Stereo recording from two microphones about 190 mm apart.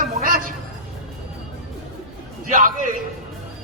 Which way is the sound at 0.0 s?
45° right (ahead or behind).